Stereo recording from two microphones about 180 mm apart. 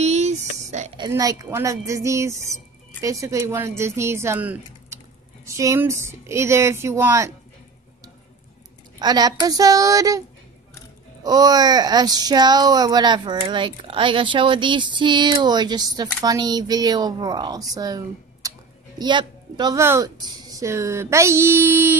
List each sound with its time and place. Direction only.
0.0 s a sound: 40° right (ahead or behind)
0.9 s speech: 20° right (ahead or behind)
9.0 s speech: 20° right (ahead or behind)
11.2 s speech: 20° right (ahead or behind)